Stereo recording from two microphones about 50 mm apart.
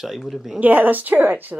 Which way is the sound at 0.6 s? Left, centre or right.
Right.